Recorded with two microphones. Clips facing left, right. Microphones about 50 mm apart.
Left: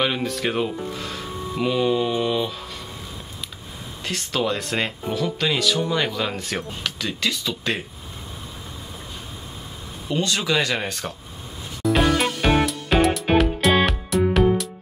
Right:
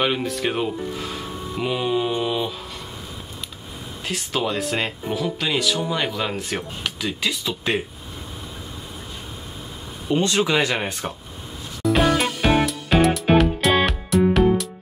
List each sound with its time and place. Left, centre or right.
0.0 s speech: centre
4.0 s speech: centre
10.0 s speech: right
11.8 s music: centre